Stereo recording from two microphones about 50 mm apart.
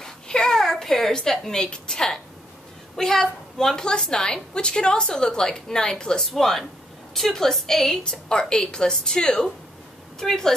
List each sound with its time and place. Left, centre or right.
0.0 s a sound: centre
3.0 s a woman's voice: centre
6.2 s a woman's voice: centre